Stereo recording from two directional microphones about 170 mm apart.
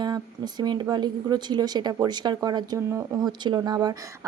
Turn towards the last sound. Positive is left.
turn(degrees=-25)  # may be behind; listen again after turning